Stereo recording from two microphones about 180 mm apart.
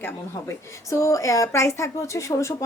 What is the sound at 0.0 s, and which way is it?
A woman's voice, 15° left (ahead or behind).